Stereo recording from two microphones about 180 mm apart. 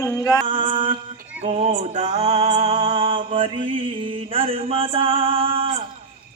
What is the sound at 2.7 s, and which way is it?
Mantra, 25° right (ahead or behind).